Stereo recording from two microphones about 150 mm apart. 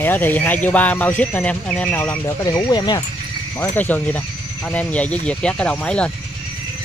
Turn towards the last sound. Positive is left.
turn(degrees=5)  # may be behind; listen again after turning